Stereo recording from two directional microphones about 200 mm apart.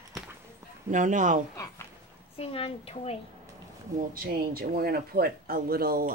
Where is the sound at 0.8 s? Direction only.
40° right (ahead or behind).